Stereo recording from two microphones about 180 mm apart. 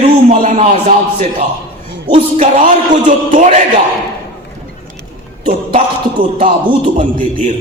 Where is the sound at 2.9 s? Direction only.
45° right (ahead or behind).